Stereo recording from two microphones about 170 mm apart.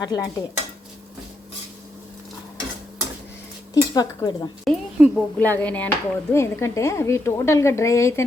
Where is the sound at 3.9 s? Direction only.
20° left (ahead or behind).